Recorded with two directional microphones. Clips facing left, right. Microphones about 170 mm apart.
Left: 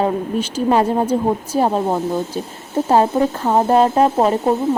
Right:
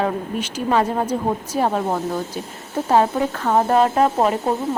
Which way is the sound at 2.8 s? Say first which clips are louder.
Left 2 dB; 30° left (ahead or behind).